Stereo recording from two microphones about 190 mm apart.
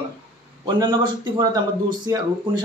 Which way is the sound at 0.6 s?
25° right (ahead or behind).